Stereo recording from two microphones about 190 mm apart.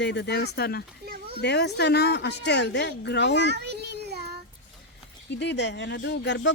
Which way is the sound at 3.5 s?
60° right (ahead or behind).